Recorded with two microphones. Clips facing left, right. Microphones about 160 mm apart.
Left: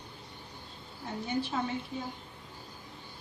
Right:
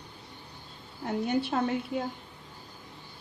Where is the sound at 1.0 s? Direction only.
65° right (ahead or behind).